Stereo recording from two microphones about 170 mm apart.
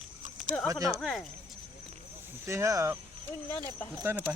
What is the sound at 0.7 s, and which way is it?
Speech, 20° right (ahead or behind).